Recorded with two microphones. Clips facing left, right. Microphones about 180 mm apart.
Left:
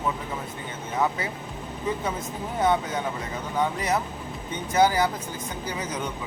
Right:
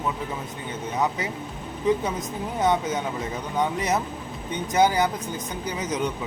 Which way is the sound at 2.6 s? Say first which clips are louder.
Right 1 dB; 20° right (ahead or behind).